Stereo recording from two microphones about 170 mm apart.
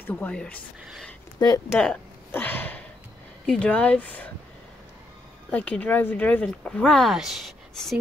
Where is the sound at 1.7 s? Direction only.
5° left (ahead or behind).